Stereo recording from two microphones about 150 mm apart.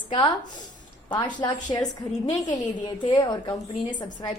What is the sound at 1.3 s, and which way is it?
A woman's voice, 30° left (ahead or behind).